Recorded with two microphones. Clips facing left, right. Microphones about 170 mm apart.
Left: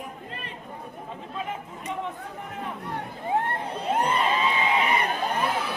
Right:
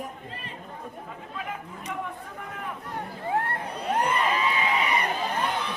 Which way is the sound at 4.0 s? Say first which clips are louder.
Left 1 dB; 30° left (ahead or behind).